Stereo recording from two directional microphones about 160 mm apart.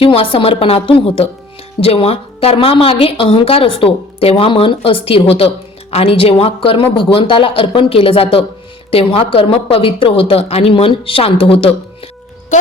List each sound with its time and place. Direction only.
0.0 s a woman's voice: 35° left (ahead or behind)